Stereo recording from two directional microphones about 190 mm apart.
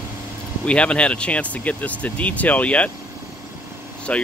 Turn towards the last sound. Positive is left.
turn(degrees=5)  # may be behind; listen again after turning